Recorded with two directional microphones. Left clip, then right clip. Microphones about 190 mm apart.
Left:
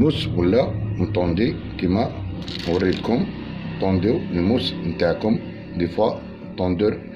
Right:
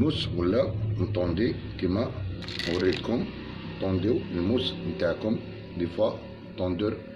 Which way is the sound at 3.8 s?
25° left (ahead or behind).